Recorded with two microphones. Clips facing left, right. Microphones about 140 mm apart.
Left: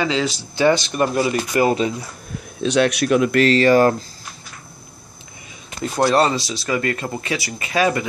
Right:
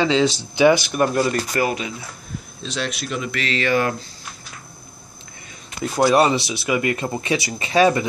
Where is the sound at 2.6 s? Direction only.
65° left (ahead or behind); by 3.9 s 35° left (ahead or behind).